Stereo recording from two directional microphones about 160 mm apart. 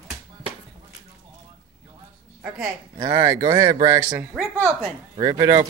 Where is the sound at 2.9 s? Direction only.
25° right (ahead or behind).